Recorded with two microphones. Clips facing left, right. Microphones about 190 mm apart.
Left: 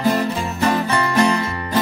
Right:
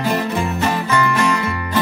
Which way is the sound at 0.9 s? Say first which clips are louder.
Even; 35° left (ahead or behind).